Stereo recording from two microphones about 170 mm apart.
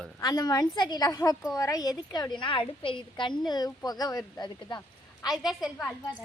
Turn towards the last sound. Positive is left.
turn(degrees=0)  # may be behind; listen again after turning